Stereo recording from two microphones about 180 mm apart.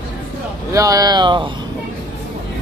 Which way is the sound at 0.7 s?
20° right (ahead or behind).